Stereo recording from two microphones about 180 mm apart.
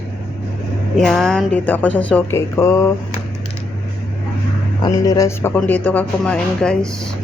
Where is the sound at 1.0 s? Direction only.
Centre (ahead or behind).